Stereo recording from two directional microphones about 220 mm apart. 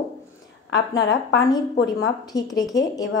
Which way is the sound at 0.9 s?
55° left (ahead or behind).